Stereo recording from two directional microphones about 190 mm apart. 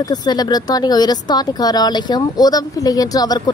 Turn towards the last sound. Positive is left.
turn(degrees=20)  # may be behind; listen again after turning